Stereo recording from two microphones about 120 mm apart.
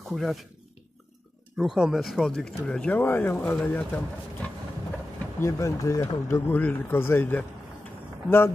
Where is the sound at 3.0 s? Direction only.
20° left (ahead or behind).